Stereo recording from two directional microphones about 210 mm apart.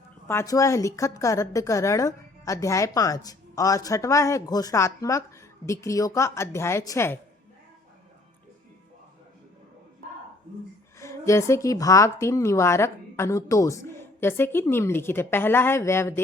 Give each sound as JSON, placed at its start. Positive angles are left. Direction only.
{"t": 0.3, "sound": "a woman's voice", "side_deg": 15}
{"t": 11.0, "sound": "a woman's voice", "side_deg": 15}